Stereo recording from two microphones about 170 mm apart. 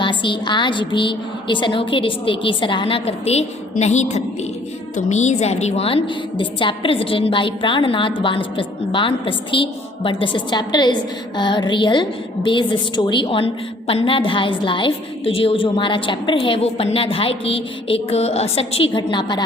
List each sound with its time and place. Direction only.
0.0 s a woman's voice: 30° left (ahead or behind)